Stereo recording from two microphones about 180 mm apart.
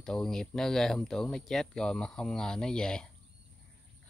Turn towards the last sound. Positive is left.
turn(degrees=5)  # may be behind; listen again after turning